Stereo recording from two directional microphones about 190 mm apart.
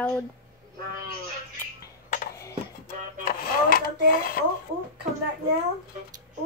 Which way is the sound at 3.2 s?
50° left (ahead or behind).